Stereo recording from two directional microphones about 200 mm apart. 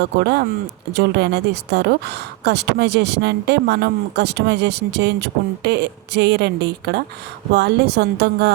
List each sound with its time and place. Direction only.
0.2 s a woman's voice: 55° right (ahead or behind)